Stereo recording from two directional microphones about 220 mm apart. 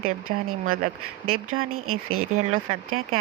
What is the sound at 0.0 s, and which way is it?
Speech, 70° right (ahead or behind).